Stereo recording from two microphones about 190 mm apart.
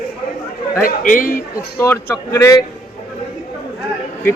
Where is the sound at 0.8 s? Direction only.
45° left (ahead or behind).